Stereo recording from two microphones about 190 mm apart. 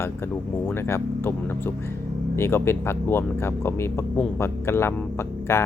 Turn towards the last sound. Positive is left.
turn(degrees=15)  # may be behind; listen again after turning